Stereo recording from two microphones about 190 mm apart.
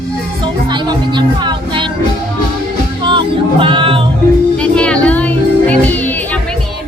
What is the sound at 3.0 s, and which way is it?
Music, 25° right (ahead or behind).